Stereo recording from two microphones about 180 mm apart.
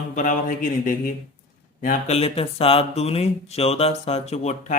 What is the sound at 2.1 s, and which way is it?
Speech, 35° left (ahead or behind).